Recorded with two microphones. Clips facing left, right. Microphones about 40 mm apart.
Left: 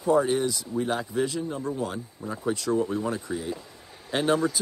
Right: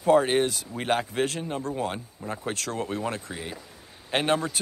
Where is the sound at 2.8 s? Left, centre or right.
Right.